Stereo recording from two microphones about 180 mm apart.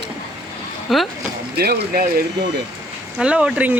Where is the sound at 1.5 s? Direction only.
60° right (ahead or behind).